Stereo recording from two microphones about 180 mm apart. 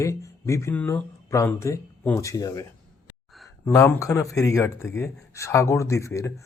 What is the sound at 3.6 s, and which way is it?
Speech, 15° left (ahead or behind).